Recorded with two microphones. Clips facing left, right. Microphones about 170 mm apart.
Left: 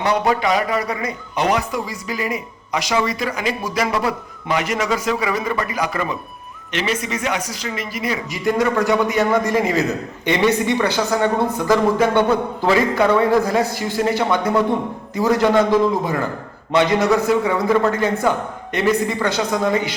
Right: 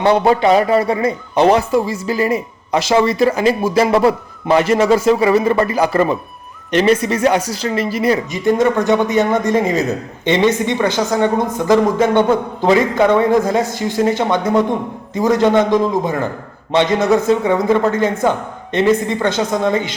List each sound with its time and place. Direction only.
0.0 s a man's voice: 30° right (ahead or behind)